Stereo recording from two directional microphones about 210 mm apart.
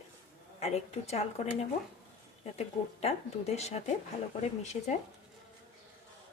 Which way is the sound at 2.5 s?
30° left (ahead or behind).